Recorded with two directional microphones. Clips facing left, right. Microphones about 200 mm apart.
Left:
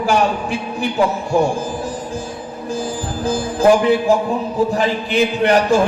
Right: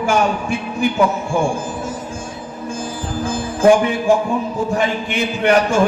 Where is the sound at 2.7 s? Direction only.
35° left (ahead or behind).